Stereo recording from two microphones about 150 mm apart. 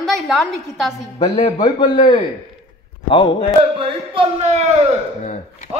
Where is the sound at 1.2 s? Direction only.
35° left (ahead or behind).